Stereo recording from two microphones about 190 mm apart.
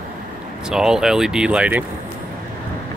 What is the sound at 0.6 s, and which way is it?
Speech, centre (ahead or behind).